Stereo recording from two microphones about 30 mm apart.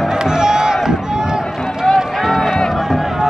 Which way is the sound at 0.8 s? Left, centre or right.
Right.